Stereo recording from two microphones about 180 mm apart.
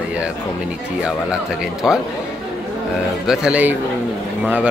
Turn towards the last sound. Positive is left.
turn(degrees=-5)  # may be behind; listen again after turning